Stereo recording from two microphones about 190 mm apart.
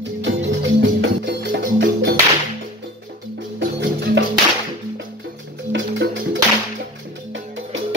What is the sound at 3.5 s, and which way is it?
Music, 70° right (ahead or behind).